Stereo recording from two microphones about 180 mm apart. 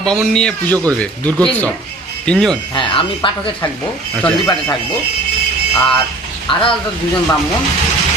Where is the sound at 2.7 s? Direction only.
30° left (ahead or behind).